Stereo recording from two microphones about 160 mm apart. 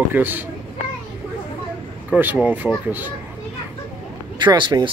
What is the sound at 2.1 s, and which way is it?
Speech, 10° right (ahead or behind).